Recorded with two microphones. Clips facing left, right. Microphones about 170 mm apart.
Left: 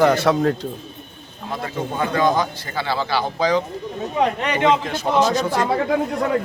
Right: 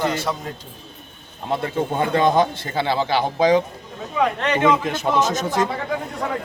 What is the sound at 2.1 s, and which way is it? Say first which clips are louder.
Speech: right 2 dB; 25° right (ahead or behind).